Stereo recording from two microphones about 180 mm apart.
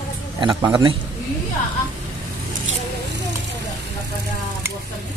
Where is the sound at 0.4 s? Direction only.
25° right (ahead or behind).